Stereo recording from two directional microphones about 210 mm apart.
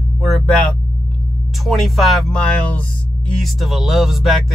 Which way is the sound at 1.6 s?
Centre (ahead or behind).